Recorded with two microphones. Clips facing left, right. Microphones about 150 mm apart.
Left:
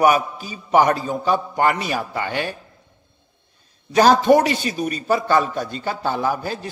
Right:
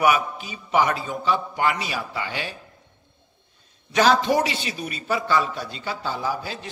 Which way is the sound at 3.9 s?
45° left (ahead or behind).